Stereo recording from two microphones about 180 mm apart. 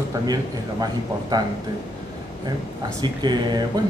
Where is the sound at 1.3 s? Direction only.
20° right (ahead or behind).